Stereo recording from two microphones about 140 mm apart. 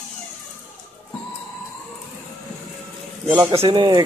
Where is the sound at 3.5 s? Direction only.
40° right (ahead or behind).